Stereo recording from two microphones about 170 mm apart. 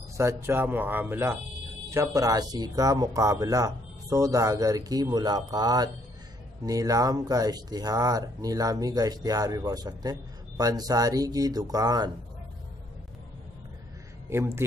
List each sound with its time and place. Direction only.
0.2 s speech: 15° right (ahead or behind)
14.3 s speech: 15° right (ahead or behind)